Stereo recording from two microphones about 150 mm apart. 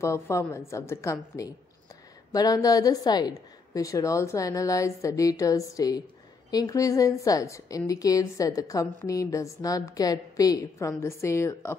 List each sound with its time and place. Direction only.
0.0 s a woman's voice: 20° left (ahead or behind)